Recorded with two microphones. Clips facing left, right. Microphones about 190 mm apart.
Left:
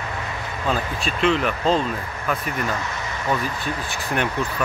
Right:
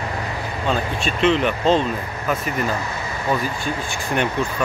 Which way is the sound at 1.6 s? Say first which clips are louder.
Right 4 dB; 30° right (ahead or behind).